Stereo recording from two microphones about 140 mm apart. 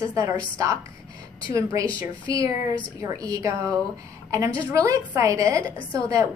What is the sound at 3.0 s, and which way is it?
Speech, 25° right (ahead or behind).